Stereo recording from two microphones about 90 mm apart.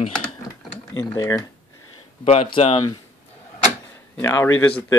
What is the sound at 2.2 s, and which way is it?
Speech, 90° left.